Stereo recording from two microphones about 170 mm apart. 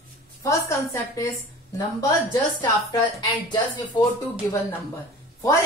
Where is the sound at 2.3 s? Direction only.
20° left (ahead or behind).